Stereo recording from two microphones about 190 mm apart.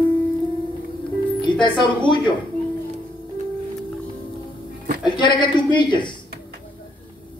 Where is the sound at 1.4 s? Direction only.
25° left (ahead or behind).